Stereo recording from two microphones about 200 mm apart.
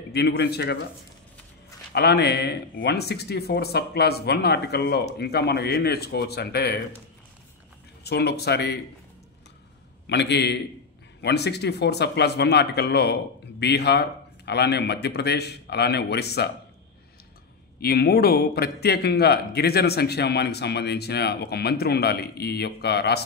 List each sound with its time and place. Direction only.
0.1 s speech: 55° left (ahead or behind)
2.0 s speech: 55° left (ahead or behind)
8.0 s speech: 55° left (ahead or behind)
10.0 s speech: 60° left (ahead or behind)
17.7 s speech: 50° left (ahead or behind)